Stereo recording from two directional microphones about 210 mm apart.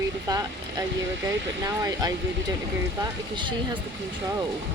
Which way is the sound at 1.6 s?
15° right (ahead or behind).